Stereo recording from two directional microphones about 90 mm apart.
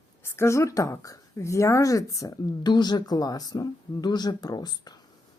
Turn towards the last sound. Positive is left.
turn(degrees=50)  # may be behind; listen again after turning